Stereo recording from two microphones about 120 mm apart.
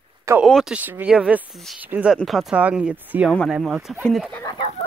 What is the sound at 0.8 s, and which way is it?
Speech, 15° right (ahead or behind).